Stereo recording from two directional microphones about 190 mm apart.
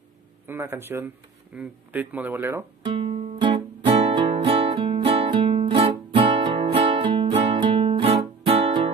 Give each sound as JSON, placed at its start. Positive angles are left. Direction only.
{"t": 0.5, "sound": "speech", "side_deg": -10}
{"t": 3.0, "sound": "guitar", "side_deg": -30}